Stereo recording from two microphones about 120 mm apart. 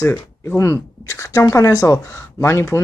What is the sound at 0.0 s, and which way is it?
Speech, 20° left (ahead or behind).